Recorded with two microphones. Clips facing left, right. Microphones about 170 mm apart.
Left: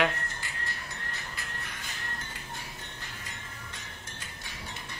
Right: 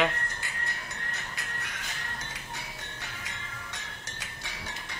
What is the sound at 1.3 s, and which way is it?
Music, 80° right.